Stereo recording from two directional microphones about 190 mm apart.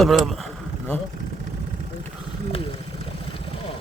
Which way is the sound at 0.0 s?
Centre (ahead or behind).